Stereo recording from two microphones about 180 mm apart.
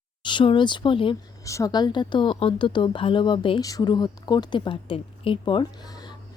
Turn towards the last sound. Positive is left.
turn(degrees=30)  # may be behind; listen again after turning